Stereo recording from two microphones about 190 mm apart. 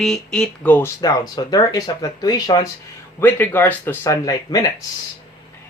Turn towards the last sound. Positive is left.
turn(degrees=20)  # may be behind; listen again after turning